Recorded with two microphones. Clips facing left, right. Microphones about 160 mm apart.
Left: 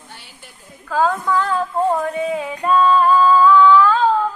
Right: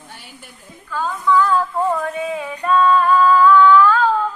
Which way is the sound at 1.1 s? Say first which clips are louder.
Right 3 dB; 50° left (ahead or behind).